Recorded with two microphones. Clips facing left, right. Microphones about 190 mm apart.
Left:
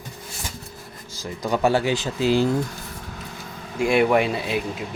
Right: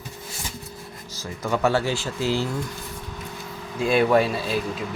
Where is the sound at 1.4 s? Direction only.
15° left (ahead or behind).